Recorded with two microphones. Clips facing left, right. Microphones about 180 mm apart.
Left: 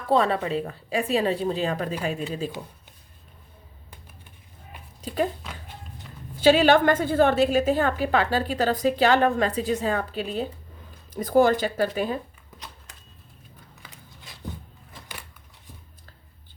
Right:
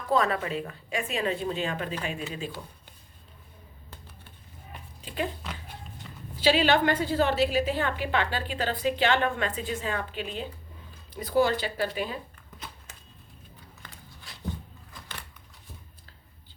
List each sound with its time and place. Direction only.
0.1 s a woman's voice: 30° left (ahead or behind)
4.9 s a sound: 40° left (ahead or behind)
6.4 s a woman's voice: 45° left (ahead or behind)